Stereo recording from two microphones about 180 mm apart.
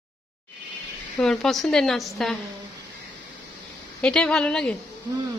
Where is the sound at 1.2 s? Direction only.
5° left (ahead or behind).